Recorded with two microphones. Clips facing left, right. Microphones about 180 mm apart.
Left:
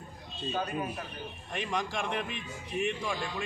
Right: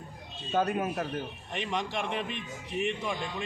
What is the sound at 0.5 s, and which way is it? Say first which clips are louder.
Speech: right 6 dB; 75° right (ahead or behind).